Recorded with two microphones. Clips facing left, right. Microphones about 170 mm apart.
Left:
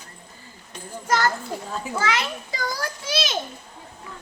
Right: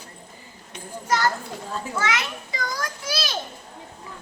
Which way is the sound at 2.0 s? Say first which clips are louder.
Left 2 dB; 30° left (ahead or behind).